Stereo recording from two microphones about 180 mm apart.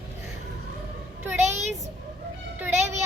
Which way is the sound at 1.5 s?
40° right (ahead or behind).